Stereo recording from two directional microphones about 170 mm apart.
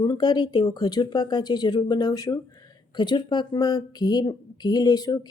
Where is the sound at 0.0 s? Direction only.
25° left (ahead or behind).